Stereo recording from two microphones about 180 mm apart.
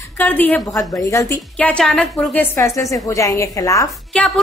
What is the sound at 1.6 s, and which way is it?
A woman's voice, 5° left (ahead or behind).